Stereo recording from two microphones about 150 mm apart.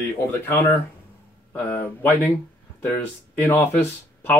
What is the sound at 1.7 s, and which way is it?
Speech, 10° left (ahead or behind).